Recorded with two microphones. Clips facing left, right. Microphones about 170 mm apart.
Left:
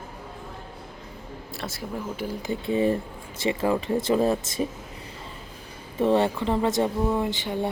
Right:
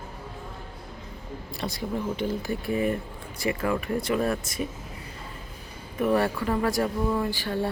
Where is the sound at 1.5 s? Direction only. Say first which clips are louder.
Right 3 dB; centre (ahead or behind).